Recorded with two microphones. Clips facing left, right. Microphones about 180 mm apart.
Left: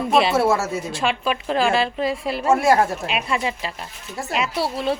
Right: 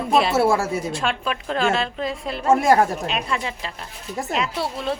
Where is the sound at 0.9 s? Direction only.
5° left (ahead or behind).